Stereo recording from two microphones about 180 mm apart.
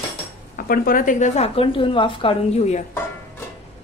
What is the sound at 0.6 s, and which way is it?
Speech, 55° left (ahead or behind).